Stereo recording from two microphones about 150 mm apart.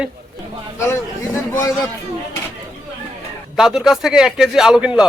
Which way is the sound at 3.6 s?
5° right (ahead or behind).